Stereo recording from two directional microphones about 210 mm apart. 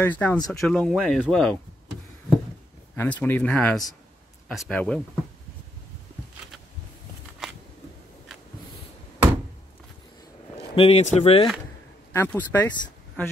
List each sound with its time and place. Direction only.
0.0 s speech: 10° left (ahead or behind)
3.0 s speech: 10° left (ahead or behind)
10.7 s speech: 30° left (ahead or behind)
12.1 s speech: 10° left (ahead or behind)